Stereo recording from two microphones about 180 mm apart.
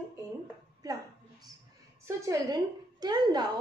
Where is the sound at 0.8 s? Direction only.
20° right (ahead or behind).